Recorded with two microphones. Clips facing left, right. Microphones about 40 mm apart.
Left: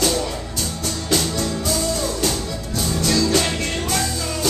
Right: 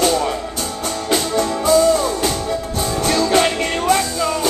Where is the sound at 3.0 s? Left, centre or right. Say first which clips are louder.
Right 4 dB; right.